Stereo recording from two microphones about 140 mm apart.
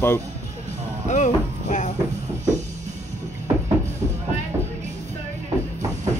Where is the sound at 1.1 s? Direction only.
55° left (ahead or behind).